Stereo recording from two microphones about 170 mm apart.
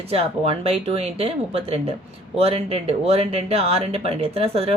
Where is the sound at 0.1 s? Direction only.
35° right (ahead or behind).